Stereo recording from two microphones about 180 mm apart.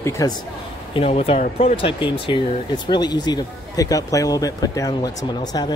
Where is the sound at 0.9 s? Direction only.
35° left (ahead or behind).